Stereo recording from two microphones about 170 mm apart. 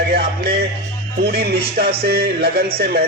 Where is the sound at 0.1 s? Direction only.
70° right (ahead or behind).